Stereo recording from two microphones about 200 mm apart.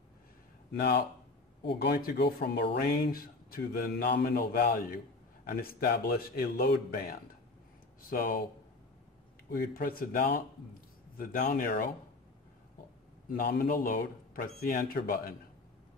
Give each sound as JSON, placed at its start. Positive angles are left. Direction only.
{"t": 0.7, "sound": "speech", "side_deg": 50}
{"t": 9.5, "sound": "speech", "side_deg": 50}
{"t": 13.4, "sound": "speech", "side_deg": 50}